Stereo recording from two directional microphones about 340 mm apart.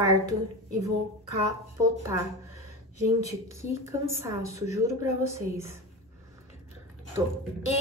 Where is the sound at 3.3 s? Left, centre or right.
Centre.